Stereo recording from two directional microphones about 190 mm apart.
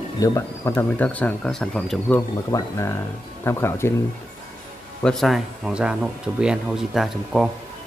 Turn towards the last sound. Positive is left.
turn(degrees=0)  # may be behind; listen again after turning